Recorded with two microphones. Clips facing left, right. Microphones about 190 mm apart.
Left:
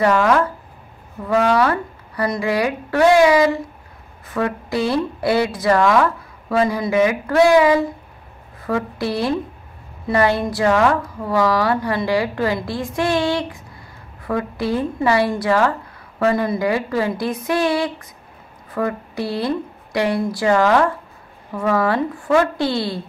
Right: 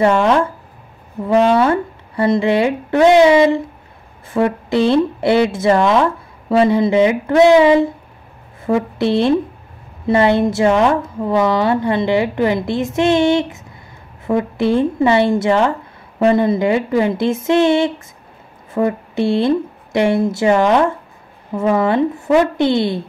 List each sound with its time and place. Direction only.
0.0 s a woman's voice: 25° right (ahead or behind)